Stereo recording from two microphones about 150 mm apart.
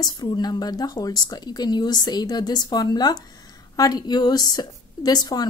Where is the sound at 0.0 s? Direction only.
25° left (ahead or behind).